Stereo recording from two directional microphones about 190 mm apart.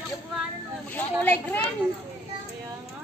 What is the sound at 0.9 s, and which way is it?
Speech, 10° left (ahead or behind).